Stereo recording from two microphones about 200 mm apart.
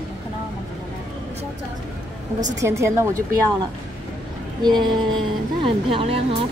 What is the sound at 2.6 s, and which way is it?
Speech, 15° right (ahead or behind).